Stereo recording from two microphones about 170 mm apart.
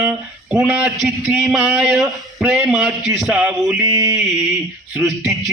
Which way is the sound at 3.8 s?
20° right (ahead or behind).